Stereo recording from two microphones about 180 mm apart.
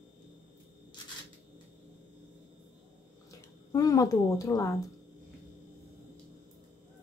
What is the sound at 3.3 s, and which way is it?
Speech, 20° left (ahead or behind).